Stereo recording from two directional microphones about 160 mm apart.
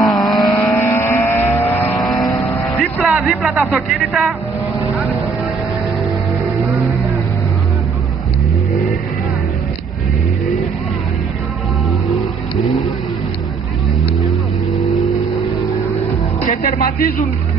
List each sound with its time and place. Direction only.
0.0 s vehicle: centre (ahead or behind)
0.7 s vehicle: 15° left (ahead or behind)
2.0 s vehicle: centre (ahead or behind)
3.0 s speech: 5° right (ahead or behind)
16.4 s speech: 55° left (ahead or behind)